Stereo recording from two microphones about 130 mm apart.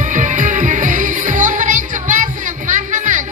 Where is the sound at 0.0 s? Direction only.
75° right (ahead or behind).